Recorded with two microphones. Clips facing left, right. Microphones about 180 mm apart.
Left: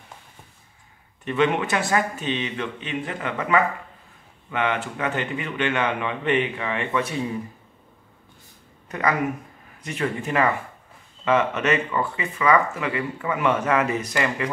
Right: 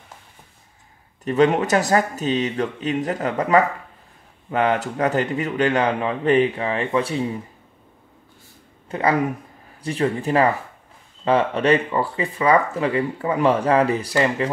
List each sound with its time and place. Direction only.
1.2 s speech: 40° right (ahead or behind)
8.8 s a sound: 30° right (ahead or behind)
9.8 s speech: 30° right (ahead or behind)